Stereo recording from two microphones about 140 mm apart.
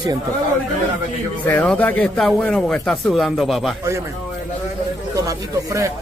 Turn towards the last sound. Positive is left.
turn(degrees=-20)  # may be behind; listen again after turning